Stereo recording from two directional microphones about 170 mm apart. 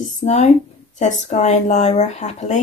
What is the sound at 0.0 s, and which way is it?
Speech, 40° left (ahead or behind).